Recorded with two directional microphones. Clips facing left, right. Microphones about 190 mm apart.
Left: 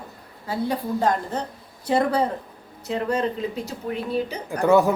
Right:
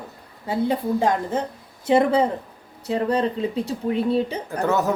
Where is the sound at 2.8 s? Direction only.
30° right (ahead or behind).